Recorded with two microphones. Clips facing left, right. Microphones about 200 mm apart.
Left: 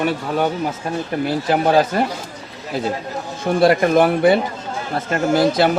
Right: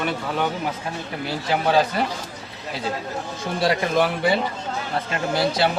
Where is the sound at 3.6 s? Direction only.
55° left (ahead or behind).